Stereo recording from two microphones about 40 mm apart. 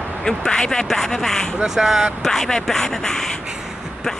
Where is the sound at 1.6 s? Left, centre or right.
Centre.